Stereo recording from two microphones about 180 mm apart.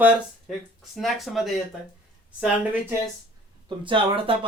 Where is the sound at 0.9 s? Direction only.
Centre (ahead or behind).